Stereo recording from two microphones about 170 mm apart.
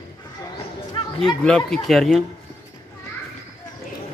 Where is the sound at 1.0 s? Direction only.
30° left (ahead or behind).